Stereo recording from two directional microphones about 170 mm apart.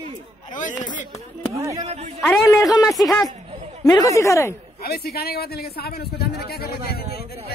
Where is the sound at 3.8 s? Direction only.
20° left (ahead or behind).